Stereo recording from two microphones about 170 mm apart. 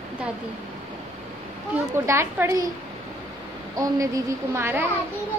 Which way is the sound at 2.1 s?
15° right (ahead or behind).